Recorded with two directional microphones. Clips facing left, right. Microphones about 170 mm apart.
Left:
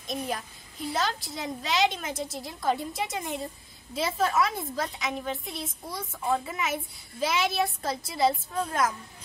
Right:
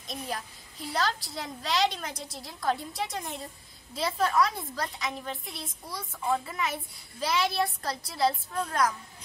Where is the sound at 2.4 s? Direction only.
Centre (ahead or behind).